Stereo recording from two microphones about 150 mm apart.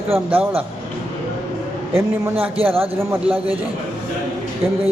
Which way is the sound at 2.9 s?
15° right (ahead or behind).